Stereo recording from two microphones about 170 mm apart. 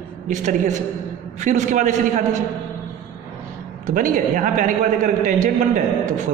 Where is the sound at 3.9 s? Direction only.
50° right (ahead or behind).